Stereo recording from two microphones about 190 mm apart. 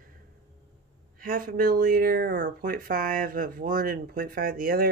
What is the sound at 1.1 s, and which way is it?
Speech, 45° right (ahead or behind).